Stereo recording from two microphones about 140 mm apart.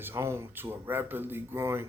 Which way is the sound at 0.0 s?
20° right (ahead or behind).